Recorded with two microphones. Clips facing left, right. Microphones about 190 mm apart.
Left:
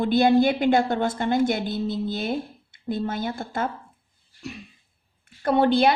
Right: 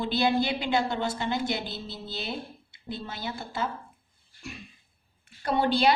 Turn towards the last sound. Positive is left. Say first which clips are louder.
# left 5 dB
turn(degrees=55)  # may be behind; listen again after turning